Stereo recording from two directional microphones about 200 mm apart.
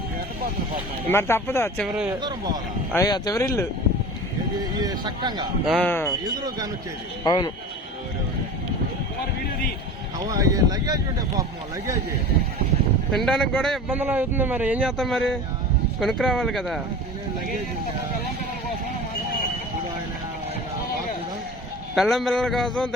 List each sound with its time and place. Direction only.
1.0 s speech: 10° left (ahead or behind)
2.0 s speech: 20° right (ahead or behind)
2.9 s speech: 15° left (ahead or behind)
4.8 s speech: 20° right (ahead or behind)
5.6 s speech: 5° left (ahead or behind)
6.1 s speech: 20° right (ahead or behind)
7.3 s speech: 20° left (ahead or behind)
10.2 s speech: 15° right (ahead or behind)
13.1 s a man's voice: 5° left (ahead or behind)
13.9 s a man's voice: 10° right (ahead or behind)
21.9 s a man's voice: centre (ahead or behind)